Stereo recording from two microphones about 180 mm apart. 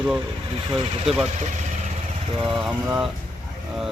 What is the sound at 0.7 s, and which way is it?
Speech, 35° right (ahead or behind).